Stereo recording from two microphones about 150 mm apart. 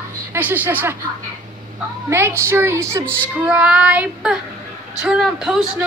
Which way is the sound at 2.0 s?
15° right (ahead or behind).